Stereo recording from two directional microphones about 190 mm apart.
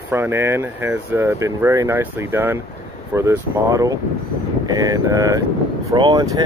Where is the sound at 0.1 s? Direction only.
15° right (ahead or behind).